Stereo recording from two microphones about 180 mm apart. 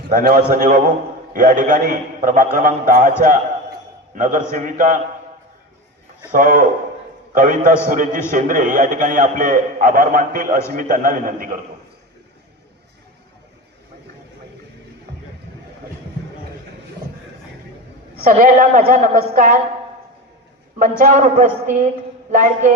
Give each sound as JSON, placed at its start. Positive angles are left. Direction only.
{"t": 0.1, "sound": "a man's voice", "side_deg": -50}
{"t": 6.3, "sound": "a man's voice", "side_deg": -45}
{"t": 18.2, "sound": "a man's voice", "side_deg": -50}
{"t": 21.0, "sound": "a man's voice", "side_deg": -45}